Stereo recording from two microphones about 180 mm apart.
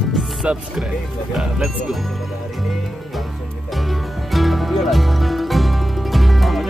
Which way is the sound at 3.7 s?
Centre (ahead or behind).